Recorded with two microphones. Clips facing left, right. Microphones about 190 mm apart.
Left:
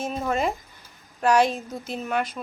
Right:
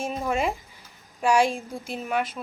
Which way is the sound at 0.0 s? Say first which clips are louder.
Left 1 dB; 5° right (ahead or behind).